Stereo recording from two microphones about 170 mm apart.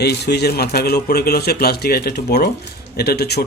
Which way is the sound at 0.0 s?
75° left (ahead or behind).